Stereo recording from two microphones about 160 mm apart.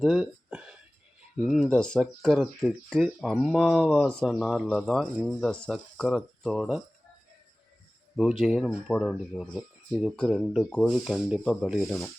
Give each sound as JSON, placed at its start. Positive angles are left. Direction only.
{"t": 0.0, "sound": "a sound", "side_deg": 0}
{"t": 1.5, "sound": "speech", "side_deg": 0}
{"t": 8.1, "sound": "speech", "side_deg": 0}